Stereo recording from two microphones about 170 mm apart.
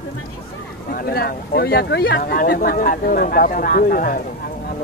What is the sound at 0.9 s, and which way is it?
Speech, 65° left (ahead or behind).